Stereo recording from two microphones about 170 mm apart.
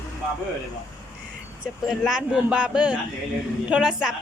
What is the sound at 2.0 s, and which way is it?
A woman's voice, 5° right (ahead or behind).